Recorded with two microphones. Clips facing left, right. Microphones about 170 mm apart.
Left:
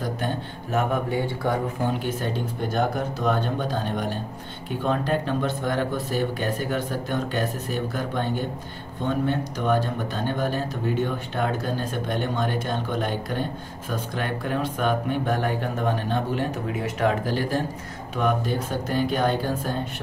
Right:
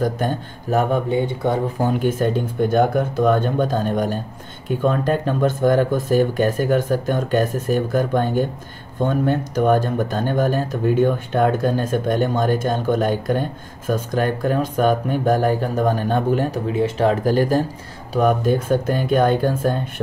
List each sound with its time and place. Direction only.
0.0 s speech: 40° right (ahead or behind)
1.0 s speech: 20° right (ahead or behind)
1.8 s speech: 50° right (ahead or behind)
16.7 s speech: 30° right (ahead or behind); by 19.7 s 50° right (ahead or behind)